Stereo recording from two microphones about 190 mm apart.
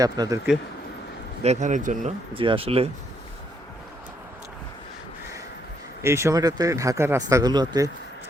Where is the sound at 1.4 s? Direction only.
40° right (ahead or behind).